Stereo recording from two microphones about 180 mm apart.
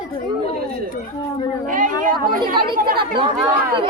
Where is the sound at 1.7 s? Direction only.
50° right (ahead or behind).